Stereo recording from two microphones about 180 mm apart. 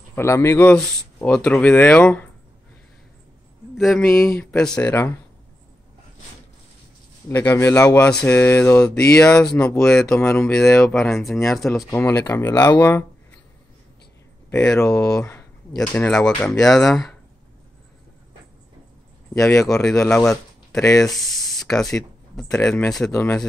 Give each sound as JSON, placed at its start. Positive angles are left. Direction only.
{"t": 0.1, "sound": "speech", "side_deg": 15}
{"t": 3.7, "sound": "speech", "side_deg": 0}
{"t": 7.2, "sound": "speech", "side_deg": 15}
{"t": 15.0, "sound": "speech", "side_deg": 5}
{"t": 19.3, "sound": "speech", "side_deg": 15}
{"t": 20.1, "sound": "speech", "side_deg": 5}